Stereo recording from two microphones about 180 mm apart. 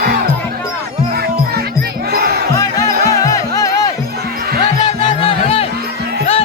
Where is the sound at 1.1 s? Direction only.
60° right (ahead or behind).